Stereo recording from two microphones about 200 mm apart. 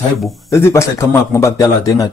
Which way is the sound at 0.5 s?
15° left (ahead or behind).